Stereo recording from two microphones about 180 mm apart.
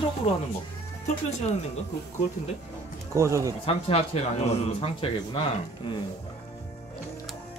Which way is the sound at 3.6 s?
35° left (ahead or behind).